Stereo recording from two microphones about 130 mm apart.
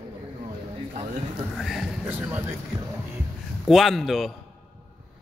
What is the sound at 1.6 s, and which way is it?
Speech, centre (ahead or behind).